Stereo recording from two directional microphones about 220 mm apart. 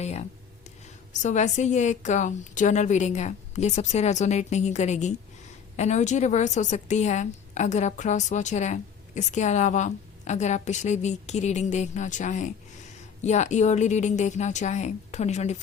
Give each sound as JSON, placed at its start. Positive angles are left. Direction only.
{"t": 0.0, "sound": "a woman's voice", "side_deg": 30}